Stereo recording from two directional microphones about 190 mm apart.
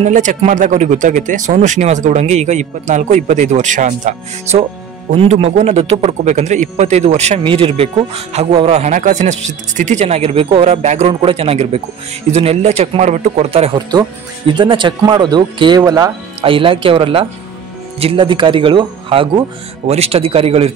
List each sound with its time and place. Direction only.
0.0 s a man's voice: 40° right (ahead or behind)